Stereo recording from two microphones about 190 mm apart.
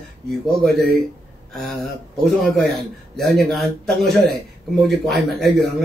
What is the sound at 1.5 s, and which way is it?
Speech, centre (ahead or behind).